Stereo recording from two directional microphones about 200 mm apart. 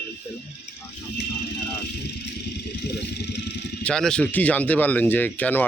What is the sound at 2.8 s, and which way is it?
Speech, 55° left (ahead or behind).